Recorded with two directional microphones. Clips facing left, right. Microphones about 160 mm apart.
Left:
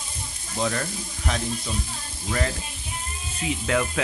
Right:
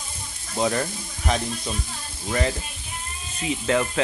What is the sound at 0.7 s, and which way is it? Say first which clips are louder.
Speech: right 4 dB; 10° right (ahead or behind).